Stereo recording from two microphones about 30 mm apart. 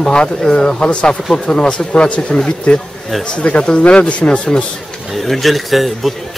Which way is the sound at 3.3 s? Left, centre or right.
Left.